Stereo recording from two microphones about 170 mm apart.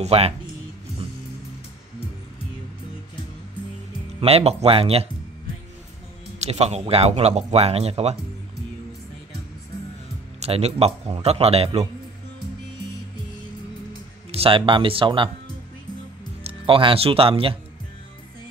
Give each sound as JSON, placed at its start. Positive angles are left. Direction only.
{"t": 0.0, "sound": "speech", "side_deg": -35}
{"t": 4.2, "sound": "speech", "side_deg": -35}
{"t": 6.4, "sound": "speech", "side_deg": -40}
{"t": 10.4, "sound": "speech", "side_deg": -40}
{"t": 14.3, "sound": "speech", "side_deg": -35}
{"t": 16.4, "sound": "speech", "side_deg": -30}